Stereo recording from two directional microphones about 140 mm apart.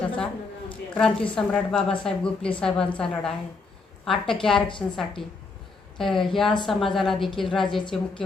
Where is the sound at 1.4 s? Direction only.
5° left (ahead or behind).